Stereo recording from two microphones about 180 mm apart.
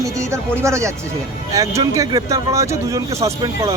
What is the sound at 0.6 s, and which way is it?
Speech, 15° right (ahead or behind).